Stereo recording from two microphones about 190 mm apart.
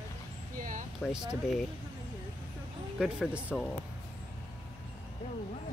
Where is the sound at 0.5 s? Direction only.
45° right (ahead or behind).